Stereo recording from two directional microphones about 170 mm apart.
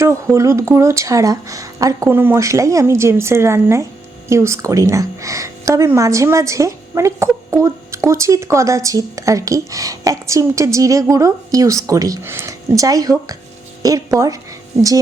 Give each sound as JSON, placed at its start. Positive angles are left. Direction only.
{"t": 0.0, "sound": "a woman's voice", "side_deg": -15}